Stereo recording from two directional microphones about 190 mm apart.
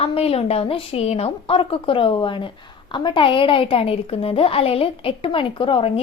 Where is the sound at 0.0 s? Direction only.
30° left (ahead or behind).